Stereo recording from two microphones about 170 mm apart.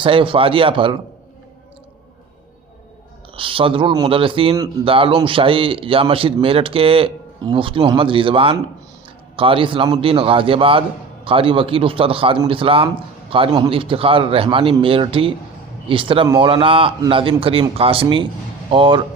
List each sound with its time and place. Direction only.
0.0 s a man's voice: 30° right (ahead or behind)
3.3 s a man's voice: 30° right (ahead or behind)